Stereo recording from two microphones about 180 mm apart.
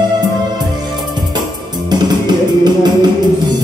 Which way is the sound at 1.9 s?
25° right (ahead or behind).